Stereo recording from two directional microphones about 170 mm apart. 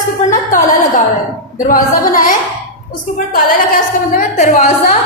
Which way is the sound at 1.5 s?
55° left (ahead or behind).